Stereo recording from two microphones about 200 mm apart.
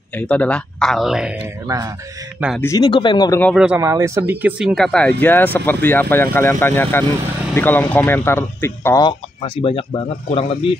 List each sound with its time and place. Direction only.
0.2 s speech: 5° left (ahead or behind)
1.7 s speech: 15° right (ahead or behind)
2.6 s speech: 20° left (ahead or behind)
3.5 s speech: 10° right (ahead or behind); by 9.8 s 25° left (ahead or behind)